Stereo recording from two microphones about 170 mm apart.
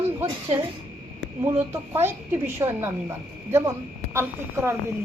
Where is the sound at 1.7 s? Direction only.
15° right (ahead or behind).